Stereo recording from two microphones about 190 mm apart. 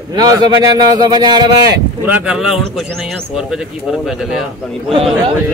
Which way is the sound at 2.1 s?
5° right (ahead or behind).